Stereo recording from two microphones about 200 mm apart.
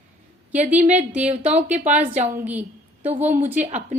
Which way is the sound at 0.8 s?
35° right (ahead or behind).